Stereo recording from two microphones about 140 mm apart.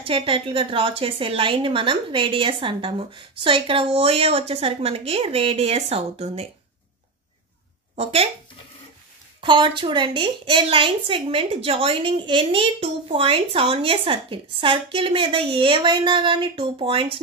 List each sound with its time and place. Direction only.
0.0 s a woman's voice: 40° right (ahead or behind)
7.9 s speech: 45° right (ahead or behind)
9.4 s a woman's voice: 35° right (ahead or behind)